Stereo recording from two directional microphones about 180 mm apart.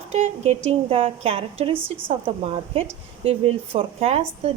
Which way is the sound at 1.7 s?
10° right (ahead or behind).